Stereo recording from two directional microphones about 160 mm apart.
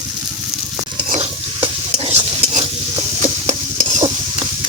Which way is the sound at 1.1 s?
35° right (ahead or behind).